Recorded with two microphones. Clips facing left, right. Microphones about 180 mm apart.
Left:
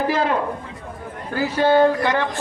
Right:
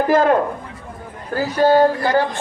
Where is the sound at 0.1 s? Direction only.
50° right (ahead or behind).